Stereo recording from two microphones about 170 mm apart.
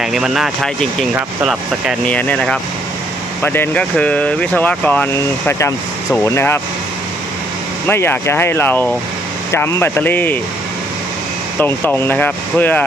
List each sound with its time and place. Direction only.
0.0 s speech: centre (ahead or behind); by 6.6 s 15° left (ahead or behind)
7.9 s speech: 15° left (ahead or behind)
11.6 s speech: 10° left (ahead or behind)